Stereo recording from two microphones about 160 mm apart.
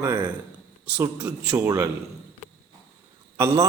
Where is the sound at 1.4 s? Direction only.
15° right (ahead or behind).